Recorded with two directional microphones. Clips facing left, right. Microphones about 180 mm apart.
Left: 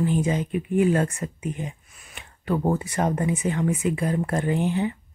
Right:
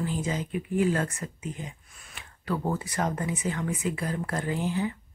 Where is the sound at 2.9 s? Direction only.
25° left (ahead or behind).